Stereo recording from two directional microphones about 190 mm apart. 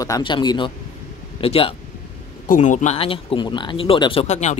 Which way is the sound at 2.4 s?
40° left (ahead or behind).